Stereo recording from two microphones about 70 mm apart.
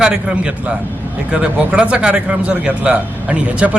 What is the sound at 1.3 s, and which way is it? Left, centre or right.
Speech, centre.